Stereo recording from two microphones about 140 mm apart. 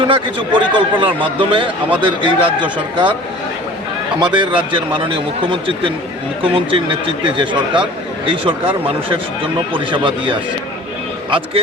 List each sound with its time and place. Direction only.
0.1 s a man's voice: 35° right (ahead or behind)
4.2 s a man's voice: 35° right (ahead or behind)